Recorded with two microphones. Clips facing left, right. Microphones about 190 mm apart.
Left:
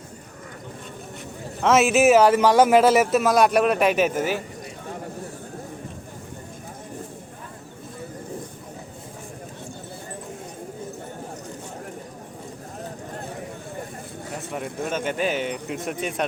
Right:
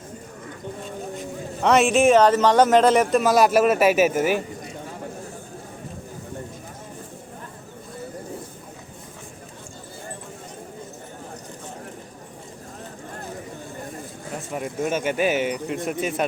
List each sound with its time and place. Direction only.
1.6 s speech: centre (ahead or behind)
14.5 s speech: 5° right (ahead or behind)